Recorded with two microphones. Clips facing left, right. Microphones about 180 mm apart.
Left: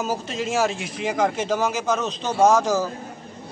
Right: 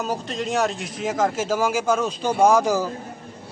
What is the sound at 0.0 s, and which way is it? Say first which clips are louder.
A man's voice: even; 5° left (ahead or behind).